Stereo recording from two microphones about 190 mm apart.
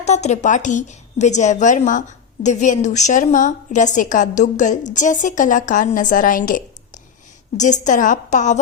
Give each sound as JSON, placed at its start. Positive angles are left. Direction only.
{"t": 0.0, "sound": "a woman's voice", "side_deg": 35}